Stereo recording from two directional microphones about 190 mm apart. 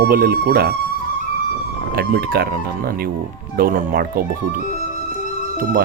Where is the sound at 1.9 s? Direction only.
55° right (ahead or behind).